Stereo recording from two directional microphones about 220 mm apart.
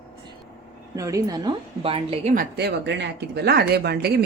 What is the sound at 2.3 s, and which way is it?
Speech, 50° right (ahead or behind).